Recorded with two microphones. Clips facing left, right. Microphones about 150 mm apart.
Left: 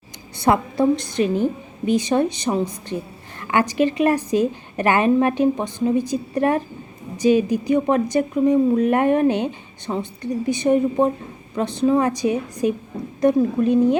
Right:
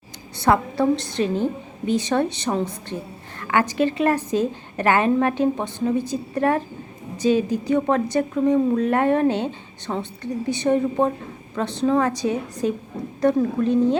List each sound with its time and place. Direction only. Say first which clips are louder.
0.4 s a woman's voice: left 1 dB; 15° left (ahead or behind)